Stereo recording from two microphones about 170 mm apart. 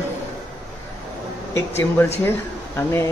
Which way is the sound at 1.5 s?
15° left (ahead or behind).